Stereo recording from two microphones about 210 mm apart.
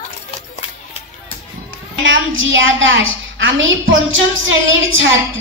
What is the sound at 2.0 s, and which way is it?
A woman's voice, 65° right (ahead or behind).